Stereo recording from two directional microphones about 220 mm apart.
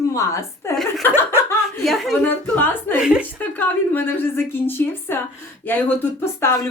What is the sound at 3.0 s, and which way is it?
Speech, 5° right (ahead or behind).